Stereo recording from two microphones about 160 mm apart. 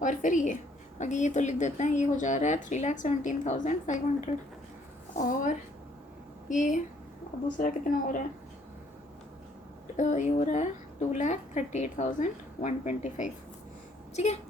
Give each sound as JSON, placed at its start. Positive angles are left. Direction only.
{"t": 0.0, "sound": "a woman's voice", "side_deg": 50}
{"t": 5.1, "sound": "a woman's voice", "side_deg": 55}
{"t": 10.0, "sound": "a woman's voice", "side_deg": 50}